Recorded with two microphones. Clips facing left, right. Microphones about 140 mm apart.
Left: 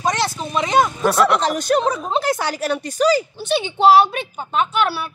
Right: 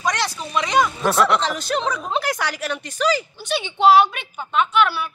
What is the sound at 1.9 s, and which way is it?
Speech, 25° left (ahead or behind).